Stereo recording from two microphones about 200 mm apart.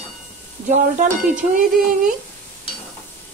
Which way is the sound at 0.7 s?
40° right (ahead or behind).